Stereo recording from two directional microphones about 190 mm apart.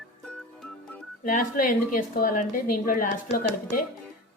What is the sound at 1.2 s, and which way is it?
Speech, 45° left (ahead or behind).